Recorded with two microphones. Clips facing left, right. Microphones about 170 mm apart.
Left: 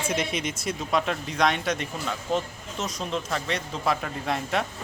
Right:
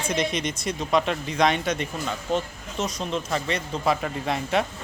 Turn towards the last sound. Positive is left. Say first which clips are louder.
# right 3 dB
turn(degrees=0)  # may be behind; listen again after turning